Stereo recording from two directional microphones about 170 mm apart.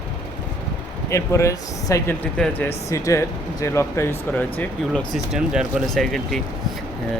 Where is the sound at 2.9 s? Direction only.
20° left (ahead or behind).